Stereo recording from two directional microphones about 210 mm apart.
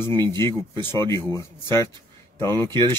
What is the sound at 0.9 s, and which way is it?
Speech, 20° right (ahead or behind).